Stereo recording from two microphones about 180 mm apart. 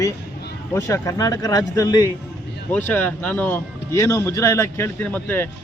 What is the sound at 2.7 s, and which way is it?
Speech, 10° left (ahead or behind).